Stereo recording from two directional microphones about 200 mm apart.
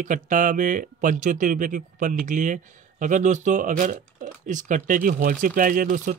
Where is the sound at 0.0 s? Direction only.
40° right (ahead or behind).